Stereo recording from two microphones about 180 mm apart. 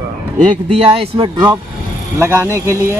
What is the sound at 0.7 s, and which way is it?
Speech, 30° right (ahead or behind).